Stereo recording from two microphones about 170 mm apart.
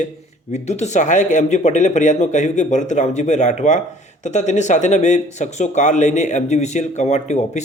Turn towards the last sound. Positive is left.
turn(degrees=45)  # may be behind; listen again after turning